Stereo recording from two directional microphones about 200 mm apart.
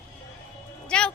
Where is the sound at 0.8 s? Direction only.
5° left (ahead or behind).